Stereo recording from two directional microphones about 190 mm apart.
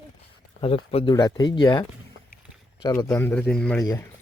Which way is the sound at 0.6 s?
30° left (ahead or behind).